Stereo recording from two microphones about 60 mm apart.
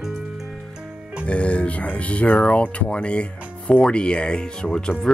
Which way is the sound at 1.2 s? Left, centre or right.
Centre.